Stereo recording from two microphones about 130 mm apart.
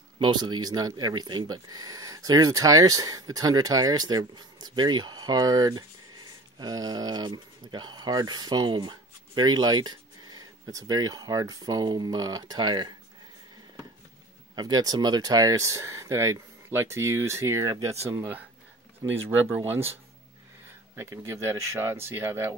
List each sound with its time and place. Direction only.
0.2 s speech: 35° right (ahead or behind)
14.5 s speech: 30° right (ahead or behind)
20.9 s speech: 20° right (ahead or behind)